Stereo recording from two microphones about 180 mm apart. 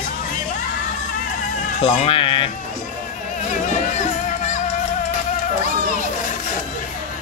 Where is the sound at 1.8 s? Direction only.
35° left (ahead or behind).